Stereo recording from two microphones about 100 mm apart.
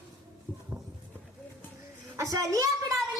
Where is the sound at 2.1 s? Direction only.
35° right (ahead or behind).